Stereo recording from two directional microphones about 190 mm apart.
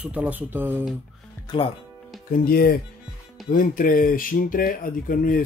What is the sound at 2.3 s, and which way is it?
Speech, 50° left (ahead or behind).